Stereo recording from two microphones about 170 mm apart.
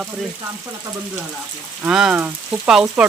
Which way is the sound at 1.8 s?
5° right (ahead or behind).